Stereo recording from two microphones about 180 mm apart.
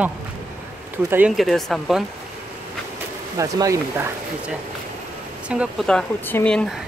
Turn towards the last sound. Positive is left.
turn(degrees=5)  # may be behind; listen again after turning